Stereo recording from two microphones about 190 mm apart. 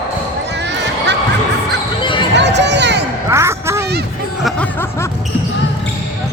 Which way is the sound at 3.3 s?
15° right (ahead or behind).